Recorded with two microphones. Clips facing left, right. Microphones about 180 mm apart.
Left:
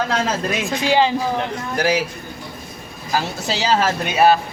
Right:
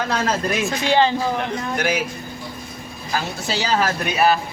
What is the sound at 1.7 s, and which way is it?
Speech, 35° left (ahead or behind).